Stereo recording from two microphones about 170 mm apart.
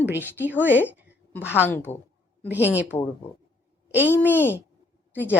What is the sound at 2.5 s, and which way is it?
A woman's voice, 10° right (ahead or behind).